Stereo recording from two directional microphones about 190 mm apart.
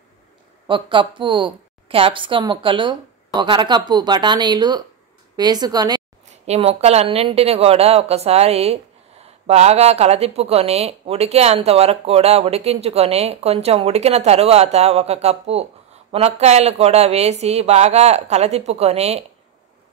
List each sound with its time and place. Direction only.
0.7 s a woman's voice: 25° right (ahead or behind)
6.4 s speech: 35° right (ahead or behind)